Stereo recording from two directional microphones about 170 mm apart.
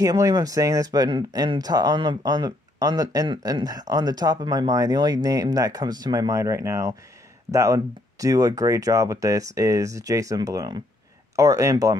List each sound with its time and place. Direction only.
0.0 s speech: 20° right (ahead or behind)